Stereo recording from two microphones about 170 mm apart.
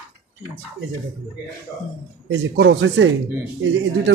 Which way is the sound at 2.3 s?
90° right.